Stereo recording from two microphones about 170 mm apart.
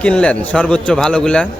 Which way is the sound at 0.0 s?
5° left (ahead or behind).